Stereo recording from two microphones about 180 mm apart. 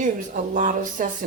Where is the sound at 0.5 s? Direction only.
45° right (ahead or behind).